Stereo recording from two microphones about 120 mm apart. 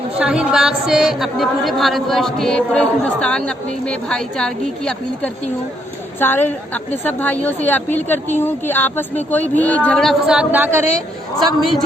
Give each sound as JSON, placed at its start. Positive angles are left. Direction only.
{"t": 0.2, "sound": "speech", "side_deg": -10}
{"t": 6.1, "sound": "a woman's voice", "side_deg": 15}